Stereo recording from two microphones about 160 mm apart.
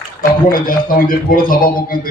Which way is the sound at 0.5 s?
60° left (ahead or behind).